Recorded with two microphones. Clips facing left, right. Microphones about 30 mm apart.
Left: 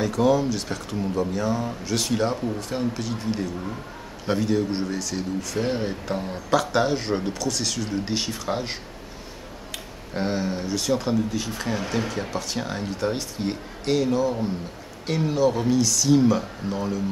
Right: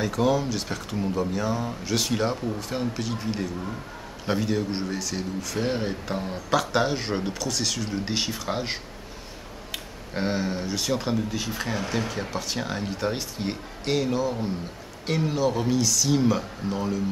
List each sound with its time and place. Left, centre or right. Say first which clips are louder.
0.0 s speech: left 3 dB; centre